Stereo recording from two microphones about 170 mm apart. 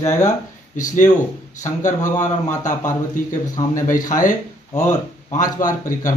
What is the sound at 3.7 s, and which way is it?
A man's voice, 50° left (ahead or behind).